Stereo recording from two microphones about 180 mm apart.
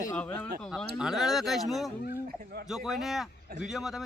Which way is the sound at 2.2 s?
55° right (ahead or behind).